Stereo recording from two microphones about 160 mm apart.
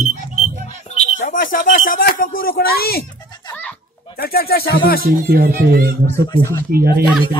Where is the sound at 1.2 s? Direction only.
55° left (ahead or behind); by 3.1 s 70° left (ahead or behind).